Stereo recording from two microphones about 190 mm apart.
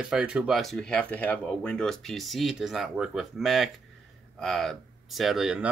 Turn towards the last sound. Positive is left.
turn(degrees=-5)  # may be behind; listen again after turning